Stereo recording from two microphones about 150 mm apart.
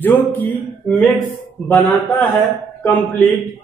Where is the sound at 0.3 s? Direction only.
10° left (ahead or behind).